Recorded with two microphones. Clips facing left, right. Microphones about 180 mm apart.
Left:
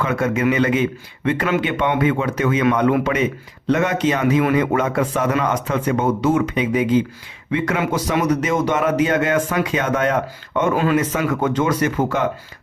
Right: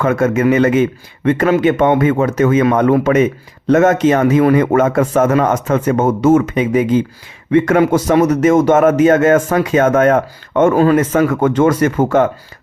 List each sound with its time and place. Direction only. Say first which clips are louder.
0.0 s speech: right 6 dB; 45° right (ahead or behind)